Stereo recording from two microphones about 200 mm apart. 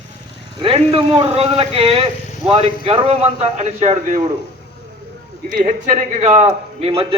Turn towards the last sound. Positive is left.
turn(degrees=-30)  # may be behind; listen again after turning